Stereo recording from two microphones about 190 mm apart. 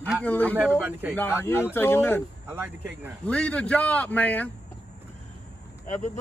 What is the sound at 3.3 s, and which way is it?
Speech, 5° left (ahead or behind).